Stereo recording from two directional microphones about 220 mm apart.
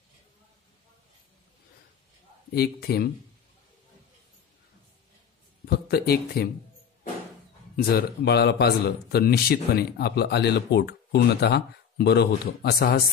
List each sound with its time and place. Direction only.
2.5 s a man's voice: 45° left (ahead or behind)
5.7 s speech: 45° left (ahead or behind)
7.7 s a man's voice: 45° left (ahead or behind)